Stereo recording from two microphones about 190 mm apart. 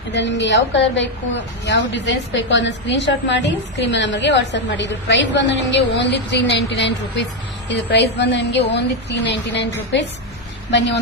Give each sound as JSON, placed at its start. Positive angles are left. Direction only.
{"t": 0.1, "sound": "a woman's voice", "side_deg": 70}